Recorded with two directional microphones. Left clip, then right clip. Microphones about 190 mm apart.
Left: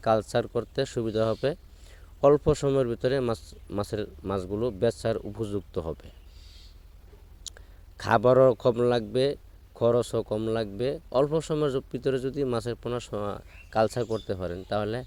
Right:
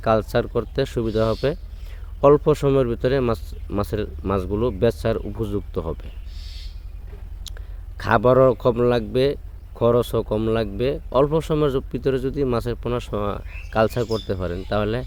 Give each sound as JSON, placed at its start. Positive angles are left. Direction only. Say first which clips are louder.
{"t": 0.0, "sound": "speech", "louder": "right 5 dB", "side_deg": 35}
{"t": 7.4, "sound": "speech", "louder": "right 2 dB", "side_deg": 35}